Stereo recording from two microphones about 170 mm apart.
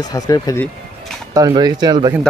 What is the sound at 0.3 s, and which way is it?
Speech, 20° left (ahead or behind).